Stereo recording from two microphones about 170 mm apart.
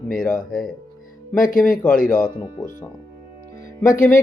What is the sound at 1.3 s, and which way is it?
Speech, 55° left (ahead or behind).